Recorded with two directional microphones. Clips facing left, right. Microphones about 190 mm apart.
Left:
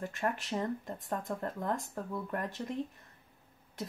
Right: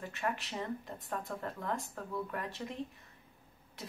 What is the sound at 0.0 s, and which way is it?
Speech, 45° left (ahead or behind).